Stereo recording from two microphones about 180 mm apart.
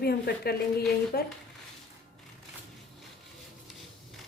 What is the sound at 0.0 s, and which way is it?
Speech, 60° left (ahead or behind).